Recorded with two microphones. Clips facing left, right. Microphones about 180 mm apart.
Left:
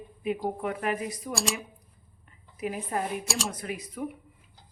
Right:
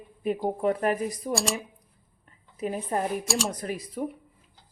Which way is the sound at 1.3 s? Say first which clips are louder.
Right 3 dB; centre (ahead or behind).